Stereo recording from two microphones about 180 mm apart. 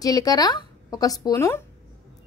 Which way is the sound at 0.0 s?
20° left (ahead or behind).